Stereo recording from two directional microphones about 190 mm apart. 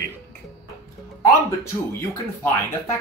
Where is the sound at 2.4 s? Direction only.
15° left (ahead or behind).